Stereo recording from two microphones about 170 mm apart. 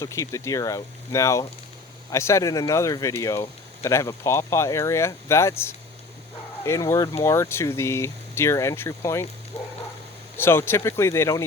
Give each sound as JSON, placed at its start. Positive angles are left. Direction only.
{"t": 0.0, "sound": "speech", "side_deg": 20}
{"t": 10.3, "sound": "speech", "side_deg": 15}